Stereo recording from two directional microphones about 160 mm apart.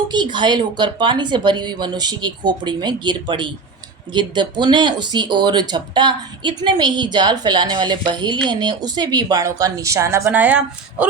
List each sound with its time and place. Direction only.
0.1 s speech: 30° right (ahead or behind); by 11.0 s 10° right (ahead or behind)